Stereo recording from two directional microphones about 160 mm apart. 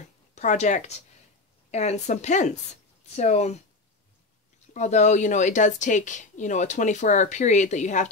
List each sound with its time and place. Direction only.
0.3 s speech: 50° left (ahead or behind)
4.7 s speech: 45° left (ahead or behind)